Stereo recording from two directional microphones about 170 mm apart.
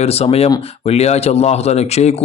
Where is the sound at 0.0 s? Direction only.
35° left (ahead or behind).